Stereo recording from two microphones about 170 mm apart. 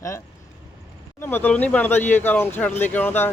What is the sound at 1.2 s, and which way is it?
Speech, 10° left (ahead or behind).